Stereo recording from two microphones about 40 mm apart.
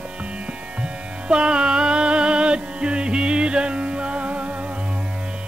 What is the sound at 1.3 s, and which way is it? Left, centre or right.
Music, right.